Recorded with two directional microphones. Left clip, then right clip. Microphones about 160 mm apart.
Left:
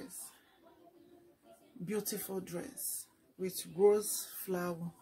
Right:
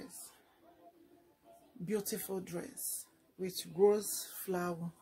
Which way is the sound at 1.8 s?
25° right (ahead or behind).